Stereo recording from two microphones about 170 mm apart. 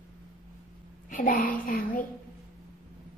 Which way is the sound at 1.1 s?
50° left (ahead or behind).